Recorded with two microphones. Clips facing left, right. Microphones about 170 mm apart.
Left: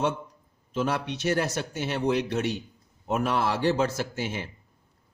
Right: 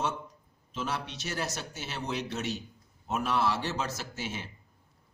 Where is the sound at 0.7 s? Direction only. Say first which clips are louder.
Left 7 dB; 55° left (ahead or behind).